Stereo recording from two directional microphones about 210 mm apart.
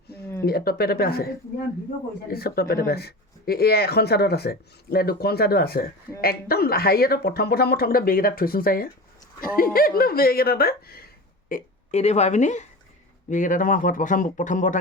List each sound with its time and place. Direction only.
0.4 s speech: 45° left (ahead or behind)
2.3 s speech: 50° left (ahead or behind)